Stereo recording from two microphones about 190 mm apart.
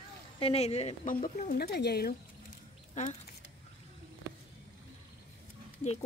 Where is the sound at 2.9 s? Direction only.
35° left (ahead or behind).